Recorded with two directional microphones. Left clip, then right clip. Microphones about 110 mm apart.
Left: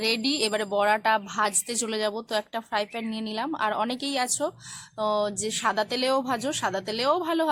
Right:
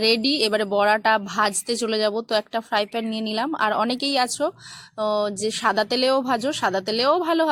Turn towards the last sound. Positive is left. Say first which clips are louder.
# right 5 dB
turn(degrees=-45)  # may be behind; listen again after turning